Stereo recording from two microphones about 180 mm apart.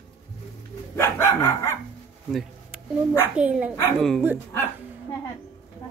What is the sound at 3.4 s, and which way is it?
Speech, 5° right (ahead or behind).